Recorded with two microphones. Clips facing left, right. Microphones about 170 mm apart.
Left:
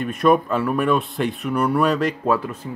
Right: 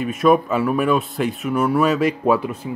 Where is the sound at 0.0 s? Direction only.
Centre (ahead or behind).